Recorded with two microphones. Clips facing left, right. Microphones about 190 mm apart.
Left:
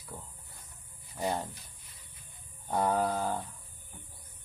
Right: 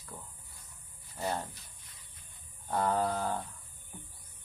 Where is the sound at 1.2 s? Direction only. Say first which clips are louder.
Left 2 dB; 15° left (ahead or behind).